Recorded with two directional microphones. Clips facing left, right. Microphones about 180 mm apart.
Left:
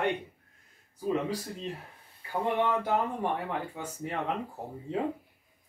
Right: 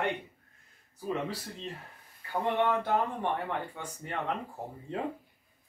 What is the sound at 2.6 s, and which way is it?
Speech, 10° left (ahead or behind).